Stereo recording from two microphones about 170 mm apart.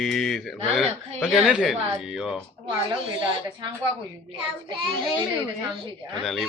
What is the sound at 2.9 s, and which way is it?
Speech, 25° right (ahead or behind).